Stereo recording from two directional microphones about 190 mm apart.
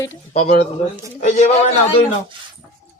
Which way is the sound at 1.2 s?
40° left (ahead or behind).